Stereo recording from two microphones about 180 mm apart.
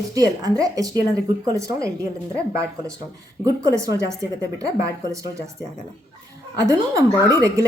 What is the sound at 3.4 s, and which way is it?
Speech, 15° right (ahead or behind).